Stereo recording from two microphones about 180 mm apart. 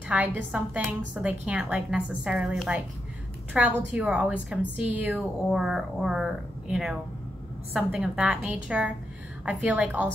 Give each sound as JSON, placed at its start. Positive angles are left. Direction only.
{"t": 0.1, "sound": "a woman's voice", "side_deg": -10}